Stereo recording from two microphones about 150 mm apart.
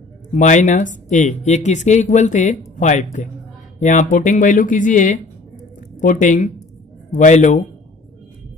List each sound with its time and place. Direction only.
0.3 s speech: 55° left (ahead or behind)